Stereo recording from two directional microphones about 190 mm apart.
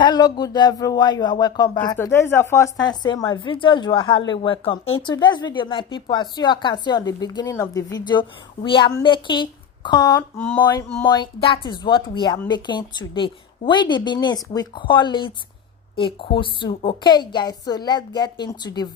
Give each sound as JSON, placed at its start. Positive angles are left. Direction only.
{"t": 0.0, "sound": "speech", "side_deg": 20}
{"t": 10.6, "sound": "speech", "side_deg": 20}